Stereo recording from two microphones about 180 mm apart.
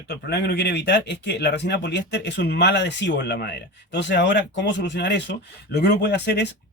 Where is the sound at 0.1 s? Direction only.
70° left (ahead or behind).